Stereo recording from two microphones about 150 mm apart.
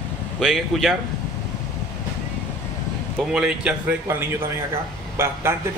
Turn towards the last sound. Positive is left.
turn(degrees=-15)  # may be behind; listen again after turning